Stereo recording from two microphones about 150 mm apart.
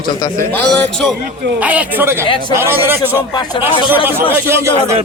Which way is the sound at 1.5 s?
10° right (ahead or behind).